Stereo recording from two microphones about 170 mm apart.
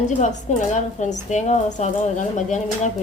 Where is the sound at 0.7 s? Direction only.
45° left (ahead or behind).